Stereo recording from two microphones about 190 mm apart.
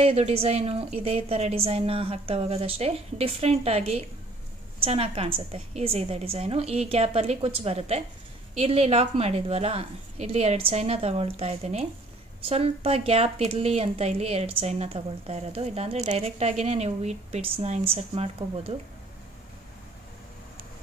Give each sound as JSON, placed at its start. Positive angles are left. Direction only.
{"t": 0.0, "sound": "a woman's voice", "side_deg": -30}